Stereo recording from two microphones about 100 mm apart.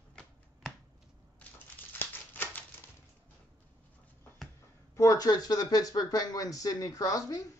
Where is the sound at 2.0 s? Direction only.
20° left (ahead or behind).